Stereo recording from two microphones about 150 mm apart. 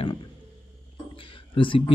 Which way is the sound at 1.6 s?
35° left (ahead or behind).